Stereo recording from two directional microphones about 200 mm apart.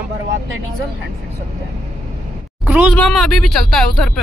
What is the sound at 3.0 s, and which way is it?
Speech, 5° left (ahead or behind).